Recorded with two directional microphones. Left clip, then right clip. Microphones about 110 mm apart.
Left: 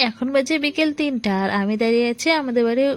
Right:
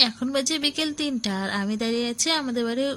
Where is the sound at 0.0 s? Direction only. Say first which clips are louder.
Left 3 dB; 40° left (ahead or behind).